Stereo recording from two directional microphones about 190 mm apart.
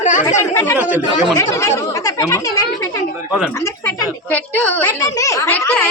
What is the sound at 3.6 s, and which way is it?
Speech, 20° left (ahead or behind).